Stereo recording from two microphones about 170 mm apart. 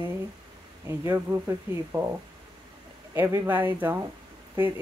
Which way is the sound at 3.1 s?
15° right (ahead or behind).